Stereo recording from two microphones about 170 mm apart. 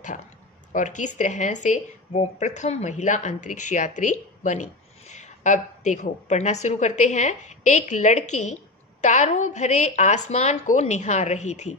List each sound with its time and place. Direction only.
0.7 s speech: 45° left (ahead or behind)